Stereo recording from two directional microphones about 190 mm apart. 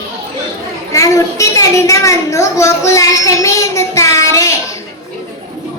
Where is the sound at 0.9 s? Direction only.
15° left (ahead or behind).